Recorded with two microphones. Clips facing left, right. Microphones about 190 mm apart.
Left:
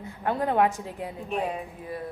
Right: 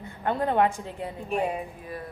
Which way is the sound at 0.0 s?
Centre (ahead or behind).